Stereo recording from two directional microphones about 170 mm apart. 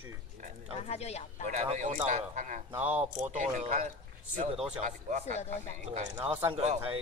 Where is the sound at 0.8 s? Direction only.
40° left (ahead or behind).